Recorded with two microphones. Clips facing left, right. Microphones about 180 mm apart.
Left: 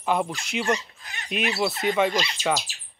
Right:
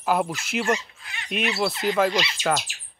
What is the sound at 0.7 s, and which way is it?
Speech, 40° left (ahead or behind).